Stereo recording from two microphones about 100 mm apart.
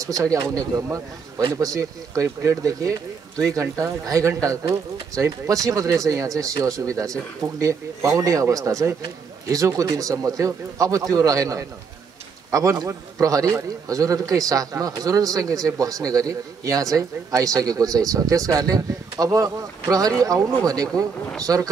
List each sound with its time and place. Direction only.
0.0 s a man's voice: 35° right (ahead or behind)